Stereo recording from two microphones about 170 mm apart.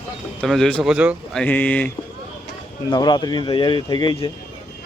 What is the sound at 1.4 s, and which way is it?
Speech, 10° left (ahead or behind).